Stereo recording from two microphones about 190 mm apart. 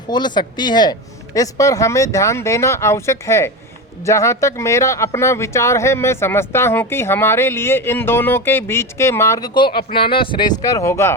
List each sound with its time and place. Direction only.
0.1 s speech: 25° left (ahead or behind)